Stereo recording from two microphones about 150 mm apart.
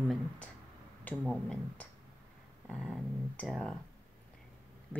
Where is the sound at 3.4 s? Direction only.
Centre (ahead or behind).